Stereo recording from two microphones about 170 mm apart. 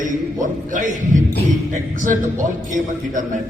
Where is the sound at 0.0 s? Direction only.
50° right (ahead or behind).